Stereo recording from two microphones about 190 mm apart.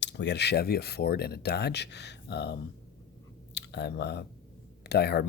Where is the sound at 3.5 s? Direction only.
60° left (ahead or behind).